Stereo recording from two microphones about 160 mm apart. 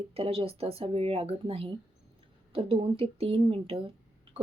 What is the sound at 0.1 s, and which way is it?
Speech, 40° right (ahead or behind).